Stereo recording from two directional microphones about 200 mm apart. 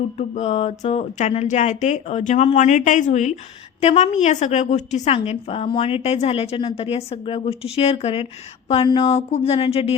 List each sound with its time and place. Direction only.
0.2 s a woman's voice: 35° left (ahead or behind)